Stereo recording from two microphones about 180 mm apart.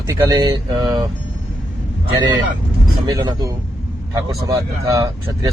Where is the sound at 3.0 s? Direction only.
20° right (ahead or behind).